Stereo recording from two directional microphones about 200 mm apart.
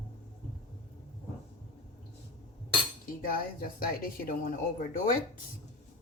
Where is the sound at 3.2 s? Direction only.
45° left (ahead or behind).